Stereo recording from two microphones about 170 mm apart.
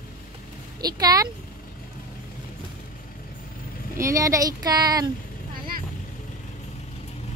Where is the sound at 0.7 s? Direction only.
25° right (ahead or behind).